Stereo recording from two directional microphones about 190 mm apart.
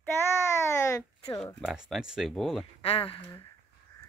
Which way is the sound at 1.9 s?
5° right (ahead or behind).